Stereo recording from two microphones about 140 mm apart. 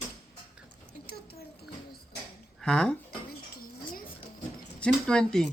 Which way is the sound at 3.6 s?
90° left.